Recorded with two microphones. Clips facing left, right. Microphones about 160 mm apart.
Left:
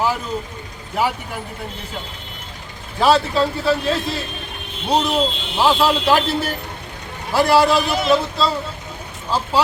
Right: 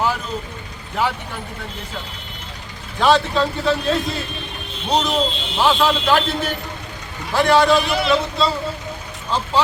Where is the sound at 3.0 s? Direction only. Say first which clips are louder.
Left 1 dB; 5° left (ahead or behind).